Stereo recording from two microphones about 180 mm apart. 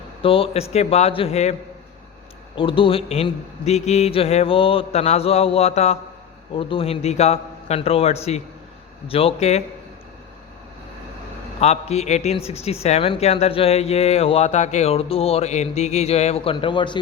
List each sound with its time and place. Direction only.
0.2 s speech: 30° left (ahead or behind)
2.6 s speech: 30° left (ahead or behind)
11.6 s speech: 35° left (ahead or behind)